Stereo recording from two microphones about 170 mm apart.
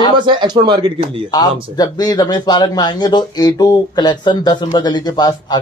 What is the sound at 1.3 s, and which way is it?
Speech, 25° left (ahead or behind).